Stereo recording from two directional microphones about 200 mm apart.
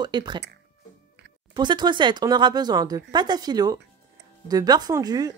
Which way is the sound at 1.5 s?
20° right (ahead or behind).